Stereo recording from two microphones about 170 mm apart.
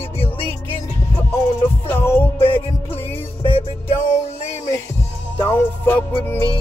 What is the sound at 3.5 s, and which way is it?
Music, 30° left (ahead or behind).